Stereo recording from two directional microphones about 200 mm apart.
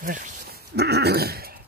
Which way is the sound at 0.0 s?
45° right (ahead or behind).